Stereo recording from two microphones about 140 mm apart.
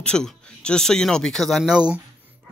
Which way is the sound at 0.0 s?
5° left (ahead or behind).